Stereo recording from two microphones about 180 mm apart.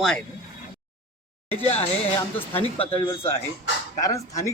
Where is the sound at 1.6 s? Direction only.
35° left (ahead or behind).